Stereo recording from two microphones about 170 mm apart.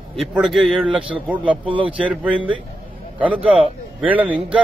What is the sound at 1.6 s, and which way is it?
Speech, 30° right (ahead or behind).